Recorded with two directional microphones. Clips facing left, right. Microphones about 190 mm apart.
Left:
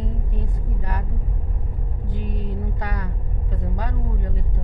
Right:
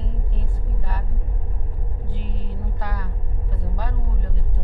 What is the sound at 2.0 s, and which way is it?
Vehicle, 15° left (ahead or behind).